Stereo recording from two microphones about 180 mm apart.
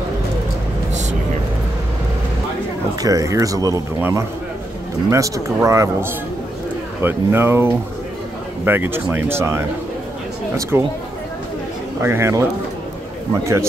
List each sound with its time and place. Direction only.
3.0 s speech: 20° right (ahead or behind)
10.7 s speech: 15° right (ahead or behind)
12.0 s speech: 15° right (ahead or behind)